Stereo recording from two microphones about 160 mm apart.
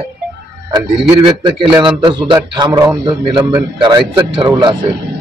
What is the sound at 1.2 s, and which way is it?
A man's voice, 30° right (ahead or behind).